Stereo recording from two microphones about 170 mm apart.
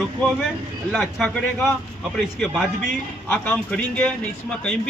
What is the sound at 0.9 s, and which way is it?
A man's voice, centre (ahead or behind).